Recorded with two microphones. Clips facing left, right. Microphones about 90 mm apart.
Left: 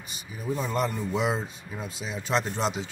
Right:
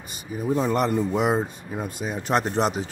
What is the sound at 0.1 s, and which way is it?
Speech, 45° right (ahead or behind).